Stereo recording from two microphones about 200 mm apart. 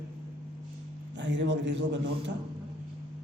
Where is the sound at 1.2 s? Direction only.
65° right (ahead or behind).